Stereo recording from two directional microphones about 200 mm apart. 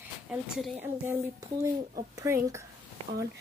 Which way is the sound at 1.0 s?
15° right (ahead or behind).